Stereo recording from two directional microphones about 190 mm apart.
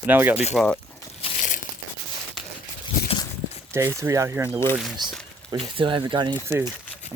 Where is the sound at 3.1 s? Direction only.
30° left (ahead or behind).